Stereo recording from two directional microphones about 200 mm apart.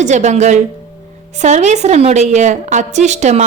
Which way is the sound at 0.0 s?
35° right (ahead or behind).